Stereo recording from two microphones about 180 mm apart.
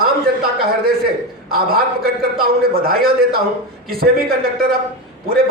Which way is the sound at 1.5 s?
55° right (ahead or behind).